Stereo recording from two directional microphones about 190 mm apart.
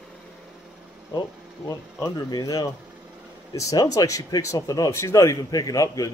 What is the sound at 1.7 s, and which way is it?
Speech, 20° left (ahead or behind).